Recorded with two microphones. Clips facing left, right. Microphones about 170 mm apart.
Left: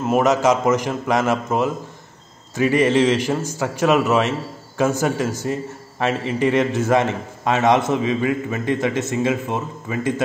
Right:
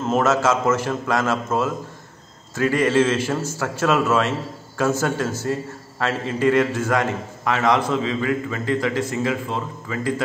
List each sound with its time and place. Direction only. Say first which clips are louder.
0.0 s a man's voice: left 2 dB; 15° left (ahead or behind)